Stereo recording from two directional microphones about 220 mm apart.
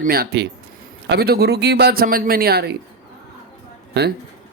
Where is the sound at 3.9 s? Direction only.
50° right (ahead or behind).